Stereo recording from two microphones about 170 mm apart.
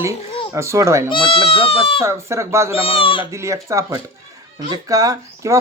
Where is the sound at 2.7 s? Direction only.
35° left (ahead or behind).